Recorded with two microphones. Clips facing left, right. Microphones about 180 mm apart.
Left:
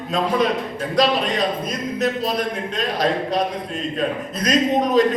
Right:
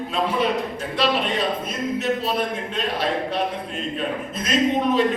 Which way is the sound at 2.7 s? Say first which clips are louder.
Left 3 dB; 40° left (ahead or behind).